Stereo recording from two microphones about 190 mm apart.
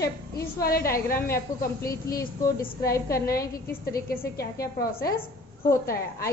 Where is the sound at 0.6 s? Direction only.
50° left (ahead or behind).